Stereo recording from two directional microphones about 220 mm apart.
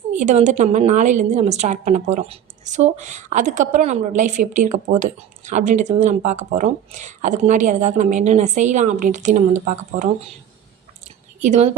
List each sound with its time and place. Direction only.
0.1 s a woman's voice: 35° right (ahead or behind)
11.3 s a woman's voice: 30° right (ahead or behind)